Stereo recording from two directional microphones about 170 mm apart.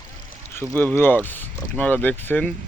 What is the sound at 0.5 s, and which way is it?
Speech, 10° left (ahead or behind).